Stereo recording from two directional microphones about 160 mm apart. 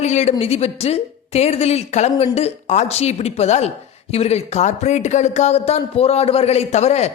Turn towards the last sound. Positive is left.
turn(degrees=45)  # may be behind; listen again after turning